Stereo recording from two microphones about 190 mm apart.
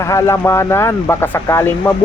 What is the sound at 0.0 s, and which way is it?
Speech, 15° left (ahead or behind).